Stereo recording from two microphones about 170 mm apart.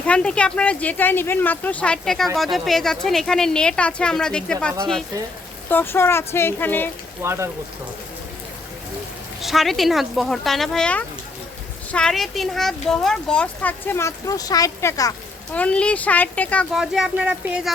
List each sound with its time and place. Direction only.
0.0 s speech: 5° left (ahead or behind)
7.2 s speech: 15° right (ahead or behind)
9.4 s speech: centre (ahead or behind); by 15.1 s 20° left (ahead or behind)
15.5 s speech: 5° left (ahead or behind)